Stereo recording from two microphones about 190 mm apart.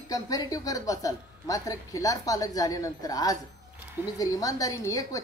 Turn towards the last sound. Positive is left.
turn(degrees=20)  # may be behind; listen again after turning